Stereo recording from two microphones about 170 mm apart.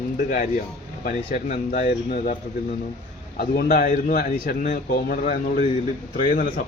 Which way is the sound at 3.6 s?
50° left (ahead or behind).